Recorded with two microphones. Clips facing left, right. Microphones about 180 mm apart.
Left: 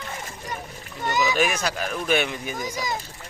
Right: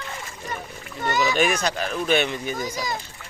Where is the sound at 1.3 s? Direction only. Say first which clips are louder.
Right 2 dB; 5° left (ahead or behind).